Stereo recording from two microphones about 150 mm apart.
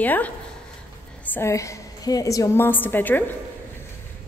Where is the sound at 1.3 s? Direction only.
20° left (ahead or behind).